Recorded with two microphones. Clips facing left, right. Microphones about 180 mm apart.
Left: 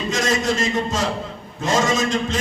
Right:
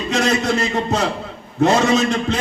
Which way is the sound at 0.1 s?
65° right (ahead or behind).